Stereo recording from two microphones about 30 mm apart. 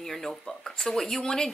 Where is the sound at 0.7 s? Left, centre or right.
Left.